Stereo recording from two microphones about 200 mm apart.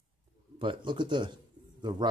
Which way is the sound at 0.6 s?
25° right (ahead or behind).